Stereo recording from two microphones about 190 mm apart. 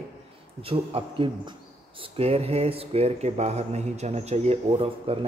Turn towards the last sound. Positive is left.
turn(degrees=-30)  # may be behind; listen again after turning